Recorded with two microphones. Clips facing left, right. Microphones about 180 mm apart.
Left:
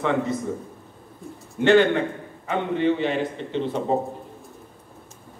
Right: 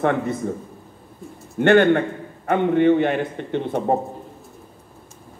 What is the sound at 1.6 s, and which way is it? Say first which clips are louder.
A man's voice: right 2 dB; 55° right (ahead or behind).